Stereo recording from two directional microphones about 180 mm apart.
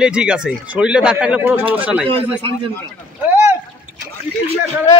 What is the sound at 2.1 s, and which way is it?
Speech, 30° right (ahead or behind).